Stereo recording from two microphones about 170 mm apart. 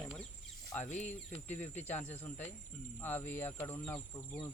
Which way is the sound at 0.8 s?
45° left (ahead or behind).